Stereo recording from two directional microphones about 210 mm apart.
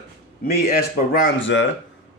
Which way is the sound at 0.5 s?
50° left (ahead or behind).